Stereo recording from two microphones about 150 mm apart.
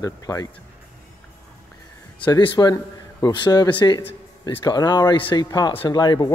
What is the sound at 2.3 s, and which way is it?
Speech, 30° left (ahead or behind).